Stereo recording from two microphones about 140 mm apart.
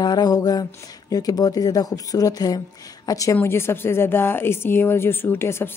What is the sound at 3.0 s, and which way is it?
Speech, 25° left (ahead or behind).